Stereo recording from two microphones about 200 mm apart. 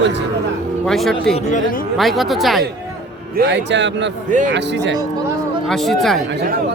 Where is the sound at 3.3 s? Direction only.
55° right (ahead or behind).